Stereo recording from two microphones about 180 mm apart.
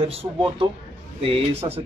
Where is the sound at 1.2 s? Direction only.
30° right (ahead or behind).